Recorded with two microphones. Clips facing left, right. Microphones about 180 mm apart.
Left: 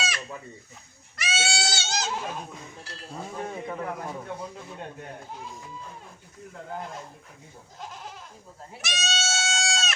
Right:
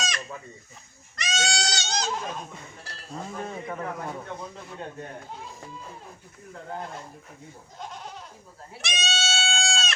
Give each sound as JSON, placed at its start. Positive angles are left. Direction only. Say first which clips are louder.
{"t": 1.1, "sound": "goat", "louder": "right 1 dB", "side_deg": 5}
{"t": 7.8, "sound": "goat", "louder": "right 2 dB", "side_deg": 0}